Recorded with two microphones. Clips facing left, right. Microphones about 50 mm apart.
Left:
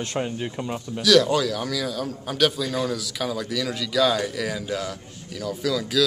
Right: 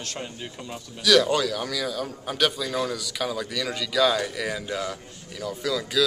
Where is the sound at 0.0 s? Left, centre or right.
Left.